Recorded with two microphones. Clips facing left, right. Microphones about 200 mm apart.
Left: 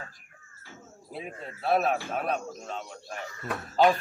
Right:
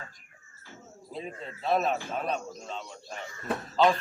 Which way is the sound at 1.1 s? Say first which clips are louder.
Even; 10° left (ahead or behind).